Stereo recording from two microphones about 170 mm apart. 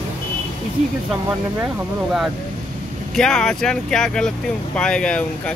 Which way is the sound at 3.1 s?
5° left (ahead or behind).